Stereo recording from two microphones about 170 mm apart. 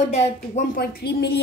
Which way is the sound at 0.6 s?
70° left (ahead or behind).